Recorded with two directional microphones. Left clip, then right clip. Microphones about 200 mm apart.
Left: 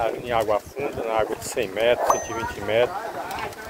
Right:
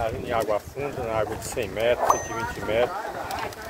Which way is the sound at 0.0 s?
25° left (ahead or behind).